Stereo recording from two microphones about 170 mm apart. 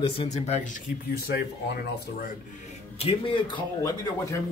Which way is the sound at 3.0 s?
35° left (ahead or behind).